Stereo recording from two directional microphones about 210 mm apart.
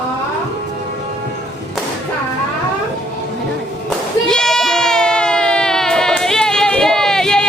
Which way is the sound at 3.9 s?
Centre (ahead or behind).